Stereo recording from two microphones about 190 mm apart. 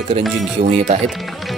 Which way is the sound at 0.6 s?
35° right (ahead or behind).